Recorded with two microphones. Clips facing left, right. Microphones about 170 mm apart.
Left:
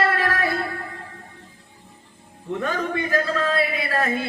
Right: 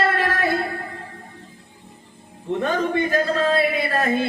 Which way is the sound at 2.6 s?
25° right (ahead or behind).